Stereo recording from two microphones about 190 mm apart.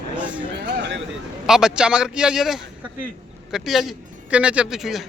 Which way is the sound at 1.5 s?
5° right (ahead or behind).